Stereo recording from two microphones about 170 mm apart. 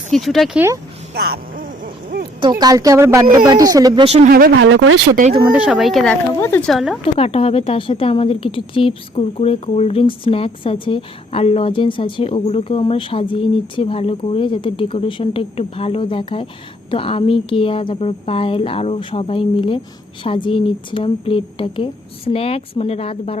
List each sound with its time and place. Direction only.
0.1 s speech: centre (ahead or behind)
1.1 s music: 70° right (ahead or behind); by 2.2 s 55° right (ahead or behind)
2.5 s speech: 20° right (ahead or behind)
4.0 s speech: 40° right (ahead or behind)
4.3 s speech: 60° right (ahead or behind); by 4.7 s 75° right (ahead or behind)
5.5 s speech: 5° right (ahead or behind)
6.4 s speech: 15° left (ahead or behind)
6.7 s speech: centre (ahead or behind)
7.2 s a woman's voice: 35° left (ahead or behind)